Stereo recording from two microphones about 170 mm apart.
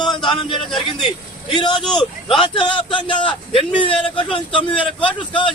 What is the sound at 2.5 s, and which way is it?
A man's voice, 30° left (ahead or behind).